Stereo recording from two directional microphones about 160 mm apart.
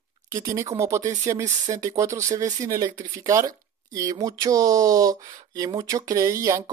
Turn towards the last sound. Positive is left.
turn(degrees=-20)  # may be behind; listen again after turning